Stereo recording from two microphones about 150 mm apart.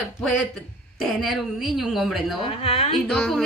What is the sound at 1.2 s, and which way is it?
A woman's voice, centre (ahead or behind).